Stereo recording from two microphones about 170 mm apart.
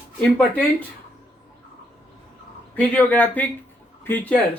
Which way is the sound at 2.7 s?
10° left (ahead or behind).